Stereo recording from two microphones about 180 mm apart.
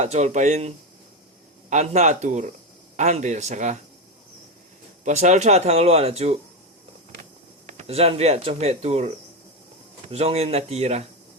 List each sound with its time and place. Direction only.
0.0 s speech: 40° right (ahead or behind)
1.7 s speech: 40° right (ahead or behind)
5.0 s speech: 40° right (ahead or behind)
7.7 s speech: 40° right (ahead or behind)